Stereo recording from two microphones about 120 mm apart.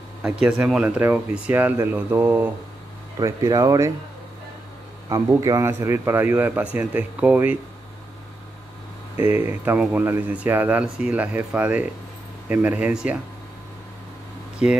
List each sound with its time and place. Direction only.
0.2 s speech: 5° right (ahead or behind)
3.2 s speech: 30° right (ahead or behind)
5.3 s speech: 25° right (ahead or behind)
9.1 s speech: 15° right (ahead or behind)